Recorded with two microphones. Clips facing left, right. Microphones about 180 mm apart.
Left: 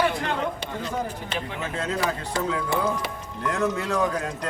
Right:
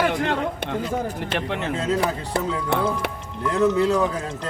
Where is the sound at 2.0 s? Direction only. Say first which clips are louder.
Right 2 dB; 65° right (ahead or behind).